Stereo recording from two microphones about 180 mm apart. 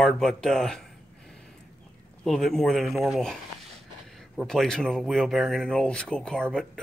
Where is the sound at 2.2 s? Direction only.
Centre (ahead or behind).